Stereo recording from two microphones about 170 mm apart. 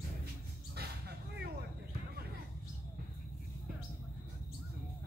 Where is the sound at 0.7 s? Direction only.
70° right (ahead or behind).